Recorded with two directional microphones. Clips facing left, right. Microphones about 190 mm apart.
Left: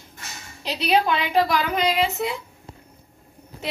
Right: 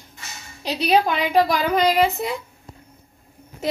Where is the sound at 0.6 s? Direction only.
40° right (ahead or behind).